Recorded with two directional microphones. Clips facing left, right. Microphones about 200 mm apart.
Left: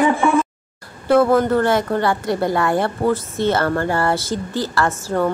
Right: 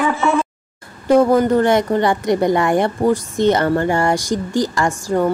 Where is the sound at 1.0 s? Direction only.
15° right (ahead or behind).